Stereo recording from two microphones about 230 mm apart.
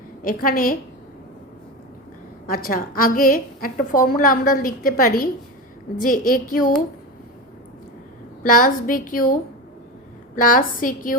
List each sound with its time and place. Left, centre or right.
0.2 s a woman's voice: left
2.5 s a woman's voice: left
8.4 s a woman's voice: left
10.3 s a woman's voice: left